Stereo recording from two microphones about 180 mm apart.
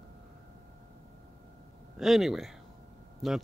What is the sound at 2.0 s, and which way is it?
Speech, centre (ahead or behind).